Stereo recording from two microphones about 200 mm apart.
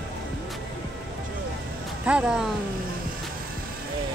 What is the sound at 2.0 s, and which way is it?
Speech, 5° right (ahead or behind).